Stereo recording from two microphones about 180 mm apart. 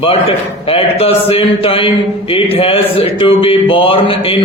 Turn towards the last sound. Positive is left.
turn(degrees=30)  # may be behind; listen again after turning